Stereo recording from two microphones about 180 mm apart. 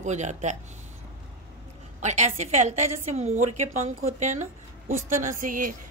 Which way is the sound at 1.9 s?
40° right (ahead or behind).